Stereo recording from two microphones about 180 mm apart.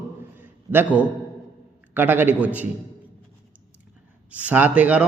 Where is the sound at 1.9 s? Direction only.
10° right (ahead or behind).